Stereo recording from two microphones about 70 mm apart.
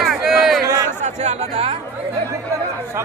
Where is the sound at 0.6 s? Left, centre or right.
Right.